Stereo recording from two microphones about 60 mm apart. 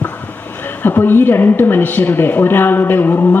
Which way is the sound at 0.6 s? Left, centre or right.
Left.